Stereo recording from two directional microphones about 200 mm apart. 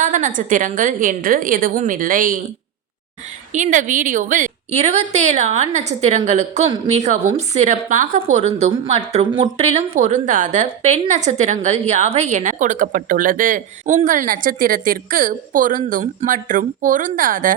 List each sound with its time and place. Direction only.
0.0 s a woman's voice: 40° right (ahead or behind)
3.5 s a woman's voice: 40° right (ahead or behind)